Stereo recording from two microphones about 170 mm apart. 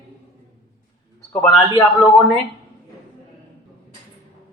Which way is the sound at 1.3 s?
5° left (ahead or behind).